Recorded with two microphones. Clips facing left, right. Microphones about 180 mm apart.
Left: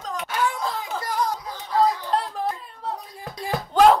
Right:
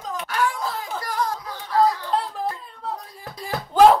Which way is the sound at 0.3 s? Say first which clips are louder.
Right 1 dB; 20° left (ahead or behind).